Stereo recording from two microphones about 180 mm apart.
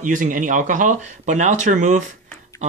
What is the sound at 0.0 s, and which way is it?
Speech, 45° right (ahead or behind).